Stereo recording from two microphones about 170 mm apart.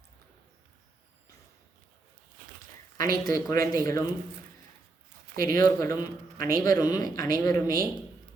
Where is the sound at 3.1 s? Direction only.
20° left (ahead or behind).